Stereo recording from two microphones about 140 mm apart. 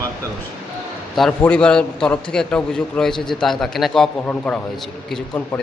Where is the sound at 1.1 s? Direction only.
5° left (ahead or behind).